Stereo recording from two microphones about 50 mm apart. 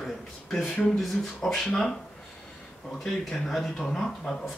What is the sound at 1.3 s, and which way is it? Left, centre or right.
Speech, centre.